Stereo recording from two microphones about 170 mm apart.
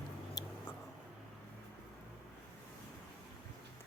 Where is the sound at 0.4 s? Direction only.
20° left (ahead or behind).